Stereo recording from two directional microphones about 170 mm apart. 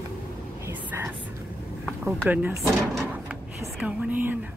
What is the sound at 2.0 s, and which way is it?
Speech, 10° right (ahead or behind).